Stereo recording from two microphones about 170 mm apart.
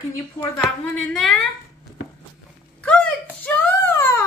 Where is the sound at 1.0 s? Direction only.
5° left (ahead or behind).